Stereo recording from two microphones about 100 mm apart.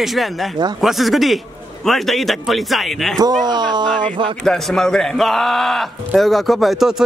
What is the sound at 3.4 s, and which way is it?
Speech, 45° right (ahead or behind).